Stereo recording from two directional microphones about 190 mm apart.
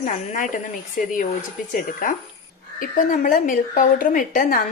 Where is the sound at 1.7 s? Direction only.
45° left (ahead or behind).